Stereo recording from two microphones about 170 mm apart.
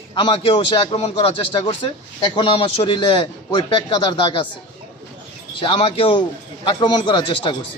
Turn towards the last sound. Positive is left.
turn(degrees=30)  # may be behind; listen again after turning